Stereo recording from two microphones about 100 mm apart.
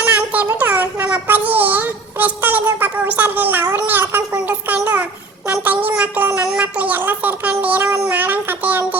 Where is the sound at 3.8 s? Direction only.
20° right (ahead or behind).